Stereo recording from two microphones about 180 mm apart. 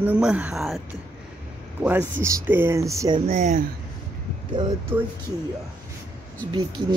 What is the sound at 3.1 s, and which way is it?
Speech, 40° right (ahead or behind).